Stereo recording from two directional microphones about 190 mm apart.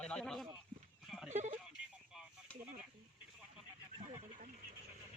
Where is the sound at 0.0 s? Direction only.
5° left (ahead or behind).